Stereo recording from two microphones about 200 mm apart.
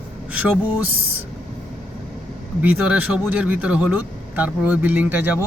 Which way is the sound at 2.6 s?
5° right (ahead or behind).